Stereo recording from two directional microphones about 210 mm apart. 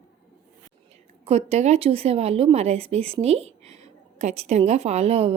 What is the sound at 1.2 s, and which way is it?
A woman's voice, 30° right (ahead or behind).